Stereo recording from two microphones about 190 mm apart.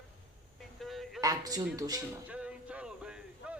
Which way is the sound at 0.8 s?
Centre (ahead or behind).